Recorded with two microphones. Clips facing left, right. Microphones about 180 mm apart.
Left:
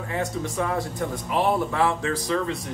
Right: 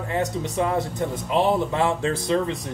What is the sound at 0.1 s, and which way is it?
Speech, 20° right (ahead or behind).